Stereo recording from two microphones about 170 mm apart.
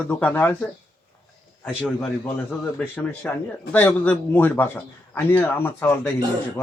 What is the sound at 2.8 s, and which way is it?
A man's voice, 10° left (ahead or behind).